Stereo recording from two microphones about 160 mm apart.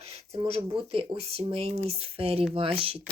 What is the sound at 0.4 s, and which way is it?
Speech, 35° right (ahead or behind).